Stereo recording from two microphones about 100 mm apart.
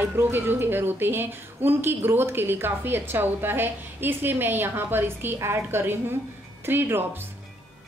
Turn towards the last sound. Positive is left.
turn(degrees=-20)  # may be behind; listen again after turning